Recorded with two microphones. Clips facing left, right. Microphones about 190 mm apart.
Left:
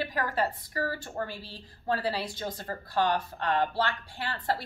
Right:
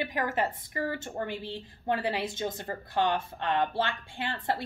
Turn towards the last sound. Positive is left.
turn(degrees=-20)  # may be behind; listen again after turning